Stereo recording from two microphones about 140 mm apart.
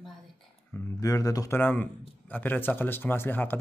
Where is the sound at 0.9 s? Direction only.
25° left (ahead or behind).